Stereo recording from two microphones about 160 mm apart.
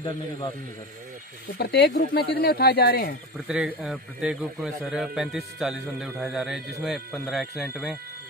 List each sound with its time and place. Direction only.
1.6 s speech: 80° left
2.4 s speech: 75° left (ahead or behind)
3.4 s a man's voice: 5° right (ahead or behind)